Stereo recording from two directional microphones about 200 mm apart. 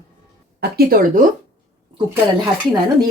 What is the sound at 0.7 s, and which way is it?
Speech, 45° right (ahead or behind).